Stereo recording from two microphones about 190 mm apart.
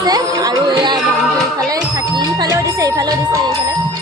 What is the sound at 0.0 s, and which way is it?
Speech, 20° right (ahead or behind).